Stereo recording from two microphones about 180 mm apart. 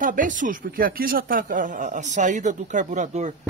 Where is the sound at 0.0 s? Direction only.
45° right (ahead or behind).